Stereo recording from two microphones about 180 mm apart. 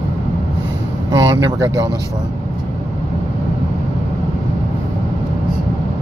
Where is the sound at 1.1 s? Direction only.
25° right (ahead or behind).